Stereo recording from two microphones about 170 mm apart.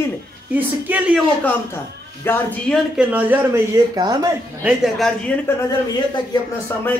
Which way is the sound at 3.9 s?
20° right (ahead or behind).